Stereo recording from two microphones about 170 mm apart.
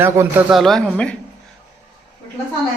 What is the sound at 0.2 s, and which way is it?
Speech, 15° right (ahead or behind).